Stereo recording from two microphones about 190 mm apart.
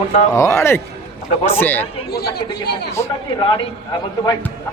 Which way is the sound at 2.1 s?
55° left (ahead or behind).